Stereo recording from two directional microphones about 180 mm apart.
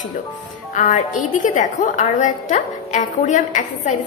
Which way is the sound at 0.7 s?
45° left (ahead or behind).